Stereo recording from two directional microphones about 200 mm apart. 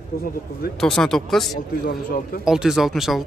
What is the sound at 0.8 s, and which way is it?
A man's voice, centre (ahead or behind).